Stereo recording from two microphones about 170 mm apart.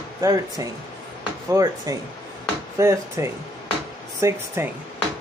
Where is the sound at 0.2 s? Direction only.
20° right (ahead or behind).